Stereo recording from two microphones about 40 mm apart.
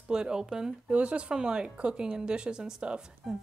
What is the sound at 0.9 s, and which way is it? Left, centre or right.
A woman's voice, right.